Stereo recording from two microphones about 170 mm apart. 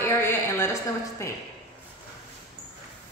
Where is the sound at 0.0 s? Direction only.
15° left (ahead or behind).